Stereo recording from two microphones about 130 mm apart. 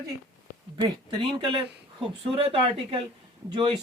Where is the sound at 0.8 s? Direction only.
40° right (ahead or behind).